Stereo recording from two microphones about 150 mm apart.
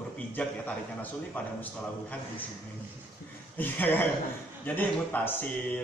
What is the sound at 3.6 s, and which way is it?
A man's voice, 10° left (ahead or behind).